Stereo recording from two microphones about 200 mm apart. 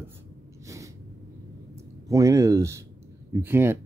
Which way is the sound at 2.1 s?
15° right (ahead or behind).